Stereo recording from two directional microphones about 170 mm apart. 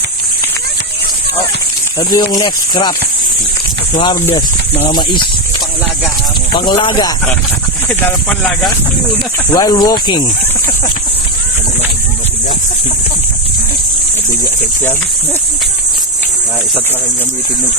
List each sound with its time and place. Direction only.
2.0 s speech: 25° left (ahead or behind)
3.9 s speech: 25° left (ahead or behind)
6.5 s speech: 30° left (ahead or behind)
7.9 s speech: centre (ahead or behind)
9.5 s speech: 20° left (ahead or behind)